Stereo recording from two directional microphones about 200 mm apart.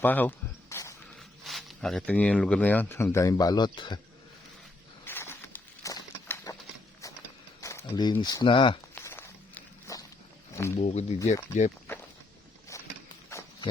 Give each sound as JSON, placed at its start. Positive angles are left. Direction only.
{"t": 0.0, "sound": "a sound", "side_deg": 10}
{"t": 1.5, "sound": "speech", "side_deg": 0}
{"t": 5.0, "sound": "a sound", "side_deg": 10}
{"t": 7.0, "sound": "clip-clop", "side_deg": 15}
{"t": 7.6, "sound": "speech", "side_deg": 15}
{"t": 9.0, "sound": "walk", "side_deg": 10}
{"t": 10.5, "sound": "speech", "side_deg": 15}
{"t": 10.8, "sound": "speech", "side_deg": 35}
{"t": 11.9, "sound": "walk", "side_deg": 10}
{"t": 12.7, "sound": "a sound", "side_deg": 15}